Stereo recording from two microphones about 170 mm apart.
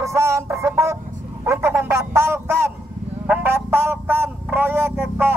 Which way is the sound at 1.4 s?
15° right (ahead or behind).